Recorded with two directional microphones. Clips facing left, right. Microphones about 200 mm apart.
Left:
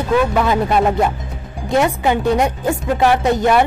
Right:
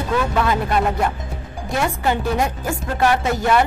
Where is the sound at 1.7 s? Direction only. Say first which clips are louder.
Left 5 dB; 20° left (ahead or behind).